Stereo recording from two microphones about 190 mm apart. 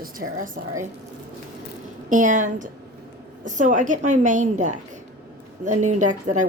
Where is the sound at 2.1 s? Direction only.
40° right (ahead or behind).